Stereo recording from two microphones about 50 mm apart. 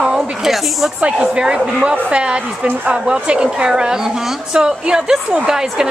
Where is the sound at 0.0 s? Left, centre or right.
Centre.